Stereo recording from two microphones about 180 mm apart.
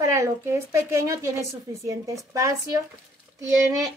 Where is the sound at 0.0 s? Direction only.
15° right (ahead or behind).